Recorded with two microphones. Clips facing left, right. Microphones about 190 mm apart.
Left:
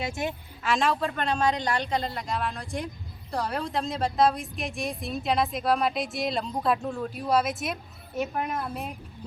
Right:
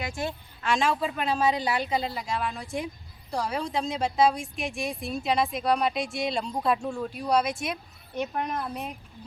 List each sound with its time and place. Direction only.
0.0 s speech: 20° left (ahead or behind)
0.6 s speech: centre (ahead or behind)